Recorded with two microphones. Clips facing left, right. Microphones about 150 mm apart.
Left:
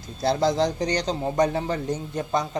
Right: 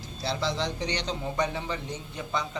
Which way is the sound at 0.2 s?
45° left (ahead or behind).